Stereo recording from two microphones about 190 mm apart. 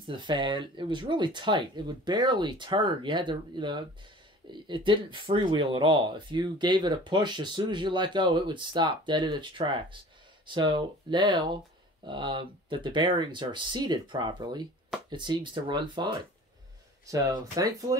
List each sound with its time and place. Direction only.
0.0 s speech: 25° right (ahead or behind)